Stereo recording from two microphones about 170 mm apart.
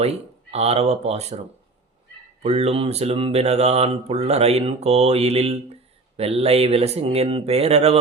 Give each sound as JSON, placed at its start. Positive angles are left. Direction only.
{"t": 0.0, "sound": "speech", "side_deg": -40}